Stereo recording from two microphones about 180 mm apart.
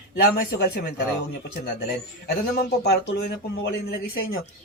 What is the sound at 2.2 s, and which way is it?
Speech, 60° left (ahead or behind).